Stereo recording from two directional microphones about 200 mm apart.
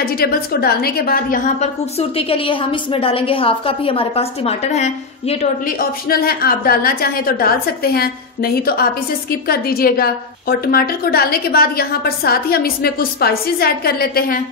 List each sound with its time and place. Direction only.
0.0 s a woman's voice: 50° left (ahead or behind)
1.6 s a woman's voice: 30° left (ahead or behind)
5.7 s a woman's voice: 50° left (ahead or behind)